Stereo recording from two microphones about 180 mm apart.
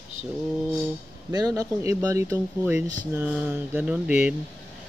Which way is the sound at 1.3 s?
20° right (ahead or behind).